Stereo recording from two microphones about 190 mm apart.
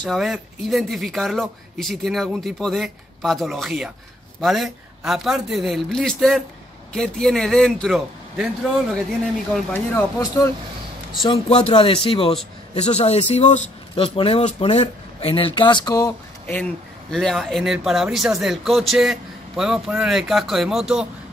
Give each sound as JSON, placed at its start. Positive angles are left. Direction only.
{"t": 0.0, "sound": "speech", "side_deg": 0}
{"t": 9.7, "sound": "speech", "side_deg": 15}
{"t": 11.2, "sound": "speech", "side_deg": 30}
{"t": 17.1, "sound": "speech", "side_deg": 0}